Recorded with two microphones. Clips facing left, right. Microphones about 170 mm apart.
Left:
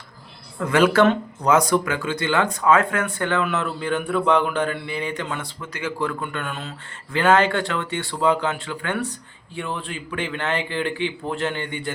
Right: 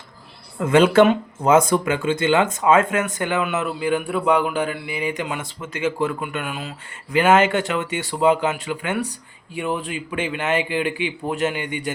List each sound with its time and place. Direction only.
0.6 s a man's voice: 25° right (ahead or behind)
5.5 s speech: 25° right (ahead or behind)
6.2 s a man's voice: 10° right (ahead or behind)